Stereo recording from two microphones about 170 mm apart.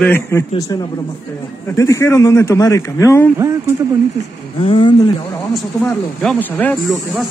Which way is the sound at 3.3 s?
15° right (ahead or behind).